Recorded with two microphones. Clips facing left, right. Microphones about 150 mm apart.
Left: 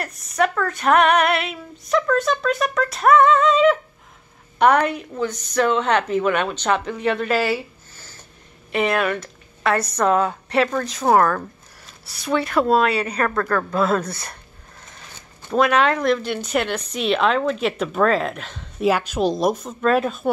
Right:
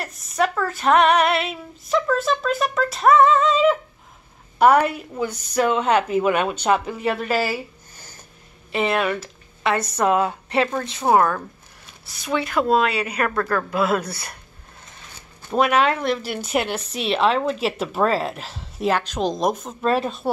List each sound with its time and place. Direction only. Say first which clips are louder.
0.0 s speech: left 1 dB; centre (ahead or behind)
0.6 s female singing: right 1 dB; centre (ahead or behind)
4.6 s a woman's voice: right 1 dB; 5° right (ahead or behind)
7.9 s a sound: even; 15° right (ahead or behind)
9.0 s speech: left 1 dB; 5° right (ahead or behind)
10.0 s a woman's voice: even; 10° right (ahead or behind)
10.5 s a woman's voice: left 4 dB; 25° right (ahead or behind)
12.3 s female singing: left 2 dB; centre (ahead or behind)
13.7 s a woman's voice: left 1 dB; 10° right (ahead or behind)
15.6 s speech: left 1 dB; 30° right (ahead or behind)
16.1 s a woman's voice: left 3 dB; 5° right (ahead or behind)
16.7 s female singing: left 2 dB; 5° right (ahead or behind)
19.8 s speech: left 2 dB; 30° right (ahead or behind)